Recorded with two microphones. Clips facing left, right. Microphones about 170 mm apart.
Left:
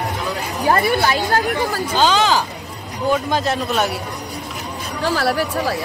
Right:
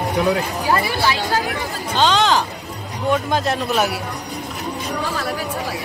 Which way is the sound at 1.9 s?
5° left (ahead or behind).